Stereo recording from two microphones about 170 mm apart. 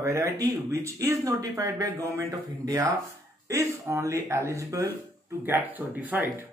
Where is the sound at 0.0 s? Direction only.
20° right (ahead or behind).